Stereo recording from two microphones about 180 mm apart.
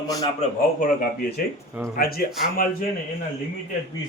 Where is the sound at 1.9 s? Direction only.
55° left (ahead or behind).